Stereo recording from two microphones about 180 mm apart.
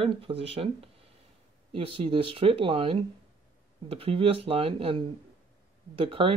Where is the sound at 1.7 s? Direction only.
30° right (ahead or behind).